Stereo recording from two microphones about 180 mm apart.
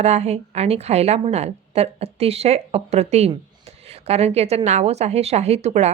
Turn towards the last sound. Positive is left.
turn(degrees=-35)  # may be behind; listen again after turning